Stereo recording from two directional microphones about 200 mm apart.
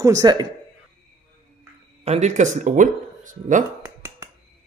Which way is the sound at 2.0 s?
35° right (ahead or behind).